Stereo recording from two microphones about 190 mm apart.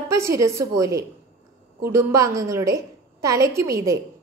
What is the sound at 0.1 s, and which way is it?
A woman's voice, 15° right (ahead or behind).